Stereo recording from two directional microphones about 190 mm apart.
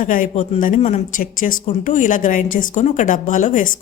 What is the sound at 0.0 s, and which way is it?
A woman's voice, 45° left (ahead or behind).